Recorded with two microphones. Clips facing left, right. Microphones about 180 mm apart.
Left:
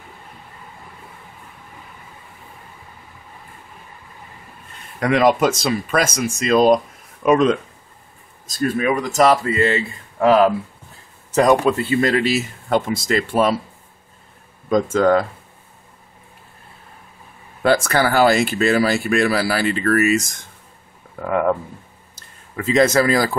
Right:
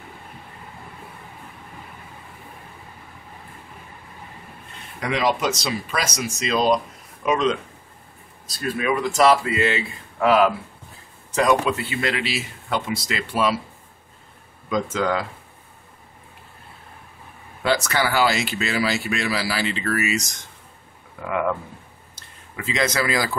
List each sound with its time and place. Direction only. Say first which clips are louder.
5.0 s speech: left 7 dB; 50° left (ahead or behind)
14.7 s speech: left 7 dB; 45° left (ahead or behind)
17.6 s speech: left 5 dB; 50° left (ahead or behind)
22.6 s speech: left 8 dB; 45° left (ahead or behind)